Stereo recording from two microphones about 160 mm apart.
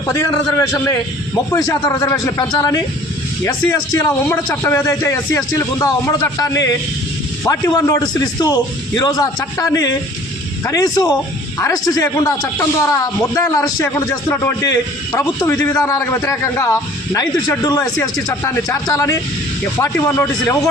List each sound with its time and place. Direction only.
0.0 s a man's voice: 20° left (ahead or behind)
3.9 s a man's voice: 15° left (ahead or behind)